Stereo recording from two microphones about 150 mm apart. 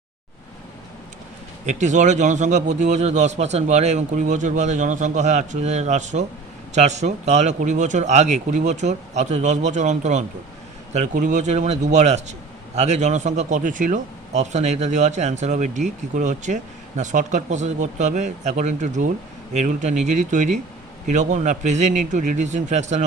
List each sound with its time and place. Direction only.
1.6 s a man's voice: 55° right (ahead or behind)